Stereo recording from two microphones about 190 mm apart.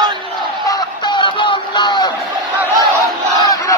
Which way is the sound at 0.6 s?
20° left (ahead or behind).